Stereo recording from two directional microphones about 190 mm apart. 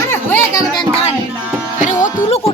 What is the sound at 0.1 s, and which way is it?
Music, 10° left (ahead or behind).